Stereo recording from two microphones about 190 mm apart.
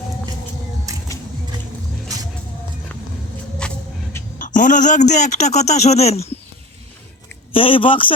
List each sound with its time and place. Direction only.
3.6 s vehicle: 5° left (ahead or behind)
4.4 s a man's voice: 45° left (ahead or behind)
7.5 s speech: 30° left (ahead or behind)